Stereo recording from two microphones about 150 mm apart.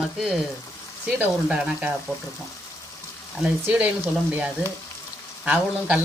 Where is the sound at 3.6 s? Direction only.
10° right (ahead or behind).